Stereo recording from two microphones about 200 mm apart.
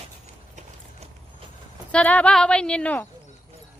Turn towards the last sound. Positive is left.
turn(degrees=5)  # may be behind; listen again after turning